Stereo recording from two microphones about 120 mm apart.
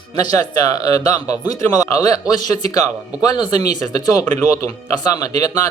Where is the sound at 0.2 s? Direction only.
30° left (ahead or behind).